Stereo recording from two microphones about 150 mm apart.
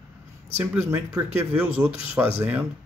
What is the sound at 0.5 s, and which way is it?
Speech, 10° right (ahead or behind).